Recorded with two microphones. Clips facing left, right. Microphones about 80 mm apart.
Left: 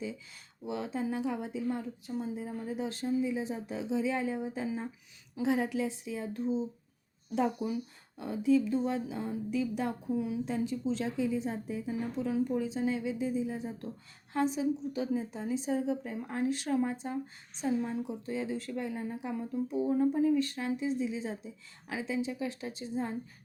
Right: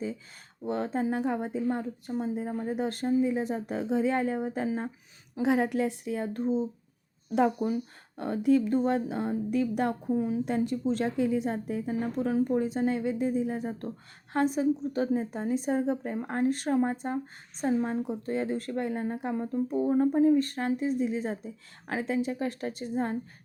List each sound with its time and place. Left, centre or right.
0.6 s a woman's voice: right
10.1 s a woman's voice: right
10.4 s a woman's voice: right